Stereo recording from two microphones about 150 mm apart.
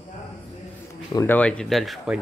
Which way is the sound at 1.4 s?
5° left (ahead or behind).